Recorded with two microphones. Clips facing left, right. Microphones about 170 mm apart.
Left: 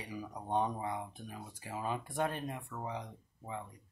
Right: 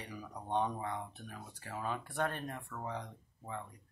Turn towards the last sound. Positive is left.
turn(degrees=10)  # may be behind; listen again after turning